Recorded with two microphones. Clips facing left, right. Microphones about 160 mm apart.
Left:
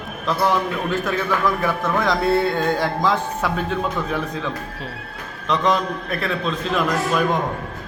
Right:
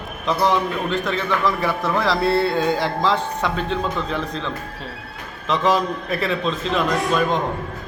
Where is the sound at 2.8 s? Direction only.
5° left (ahead or behind).